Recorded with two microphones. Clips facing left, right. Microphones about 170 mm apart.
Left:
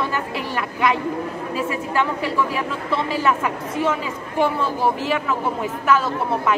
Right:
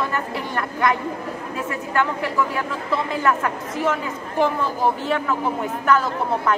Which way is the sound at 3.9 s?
5° left (ahead or behind).